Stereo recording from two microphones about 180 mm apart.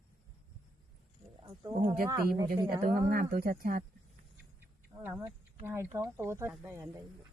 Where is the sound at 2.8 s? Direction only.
55° right (ahead or behind).